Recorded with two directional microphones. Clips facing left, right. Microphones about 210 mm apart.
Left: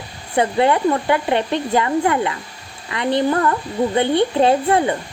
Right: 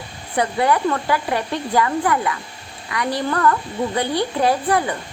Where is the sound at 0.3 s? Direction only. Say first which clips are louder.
Left 3 dB; 25° left (ahead or behind).